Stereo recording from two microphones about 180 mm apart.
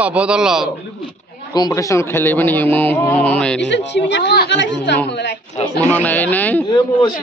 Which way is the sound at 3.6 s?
80° left.